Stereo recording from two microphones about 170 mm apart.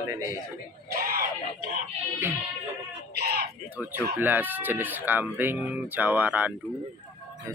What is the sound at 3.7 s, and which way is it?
Speech, 10° right (ahead or behind).